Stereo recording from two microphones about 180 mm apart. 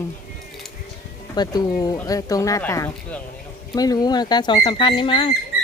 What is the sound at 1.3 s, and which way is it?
Speech, 25° left (ahead or behind).